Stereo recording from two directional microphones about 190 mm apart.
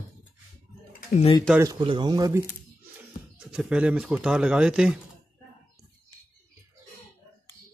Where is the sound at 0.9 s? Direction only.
35° left (ahead or behind).